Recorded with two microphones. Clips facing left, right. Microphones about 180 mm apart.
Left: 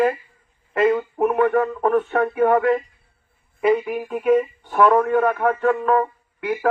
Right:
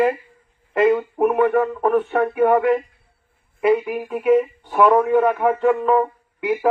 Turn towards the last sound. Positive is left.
turn(degrees=-15)  # may be behind; listen again after turning